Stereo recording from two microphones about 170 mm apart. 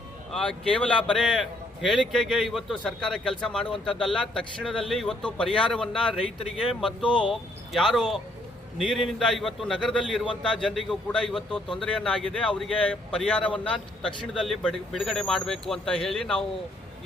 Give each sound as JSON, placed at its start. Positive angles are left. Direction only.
{"t": 0.3, "sound": "speech", "side_deg": 5}
{"t": 7.1, "sound": "speech", "side_deg": 30}
{"t": 7.7, "sound": "speech", "side_deg": 0}